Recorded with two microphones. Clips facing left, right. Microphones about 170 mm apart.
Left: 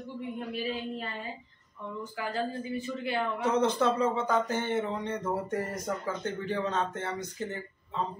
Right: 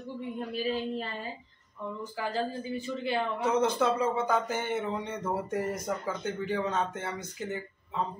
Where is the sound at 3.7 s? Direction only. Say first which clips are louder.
Even; 10° right (ahead or behind).